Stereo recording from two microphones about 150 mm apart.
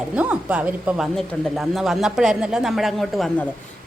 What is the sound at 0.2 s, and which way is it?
Speech, 10° right (ahead or behind).